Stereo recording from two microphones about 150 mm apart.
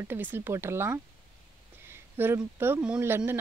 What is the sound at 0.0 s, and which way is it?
Speech, 15° right (ahead or behind).